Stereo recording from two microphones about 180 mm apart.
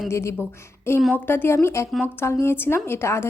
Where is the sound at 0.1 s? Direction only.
15° left (ahead or behind).